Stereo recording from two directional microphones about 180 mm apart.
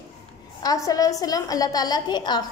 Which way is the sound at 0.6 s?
20° left (ahead or behind).